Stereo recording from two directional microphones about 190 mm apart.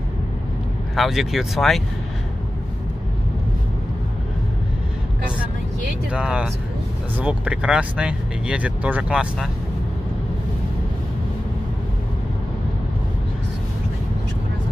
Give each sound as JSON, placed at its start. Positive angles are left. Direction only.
{"t": 0.9, "sound": "speech", "side_deg": 0}
{"t": 6.0, "sound": "speech", "side_deg": -5}